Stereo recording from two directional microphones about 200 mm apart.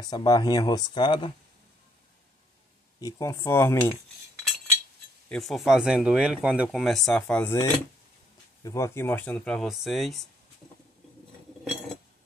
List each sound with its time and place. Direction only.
0.0 s speech: 20° left (ahead or behind)
3.0 s speech: 15° left (ahead or behind)
5.3 s speech: centre (ahead or behind)
8.6 s speech: 15° left (ahead or behind)